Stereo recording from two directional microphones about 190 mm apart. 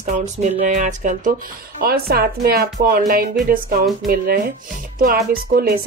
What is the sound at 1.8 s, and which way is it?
Speech, 55° right (ahead or behind).